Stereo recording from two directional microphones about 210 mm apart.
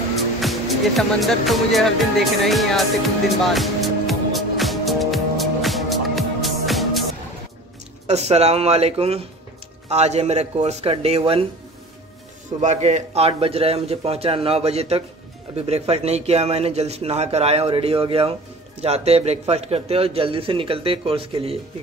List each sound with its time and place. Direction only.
0.4 s music: centre (ahead or behind)
8.1 s speech: 30° right (ahead or behind)
12.6 s speech: 35° right (ahead or behind)